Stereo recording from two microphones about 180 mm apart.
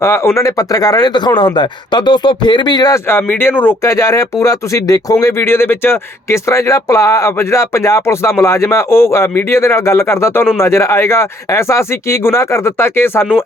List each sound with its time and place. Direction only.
0.0 s speech: 15° left (ahead or behind)